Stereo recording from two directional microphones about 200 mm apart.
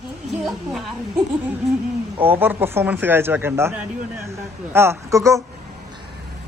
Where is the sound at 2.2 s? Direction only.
10° right (ahead or behind).